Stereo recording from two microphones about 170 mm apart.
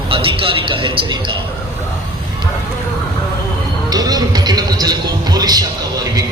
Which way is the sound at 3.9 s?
20° right (ahead or behind).